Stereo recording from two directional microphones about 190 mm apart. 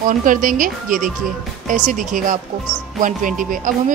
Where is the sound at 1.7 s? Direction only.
40° right (ahead or behind).